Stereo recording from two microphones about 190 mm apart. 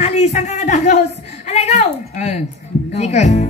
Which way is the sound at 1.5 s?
35° left (ahead or behind).